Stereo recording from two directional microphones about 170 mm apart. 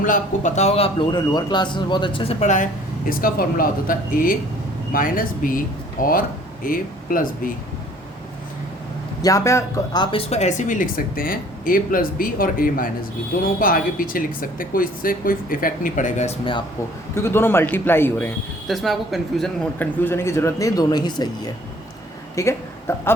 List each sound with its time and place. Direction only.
0.0 s speech: 50° left (ahead or behind)
3.1 s speech: 55° left (ahead or behind)
9.2 s speech: 20° left (ahead or behind); by 16.3 s 45° left (ahead or behind)
17.2 s a man's voice: 15° left (ahead or behind)
18.7 s speech: centre (ahead or behind)
19.8 s a woman's voice: 10° left (ahead or behind)